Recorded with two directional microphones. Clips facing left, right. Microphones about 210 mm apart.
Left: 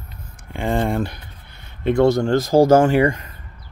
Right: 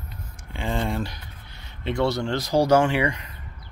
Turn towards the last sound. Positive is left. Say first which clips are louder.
# left 7 dB
turn(degrees=45)  # may be behind; listen again after turning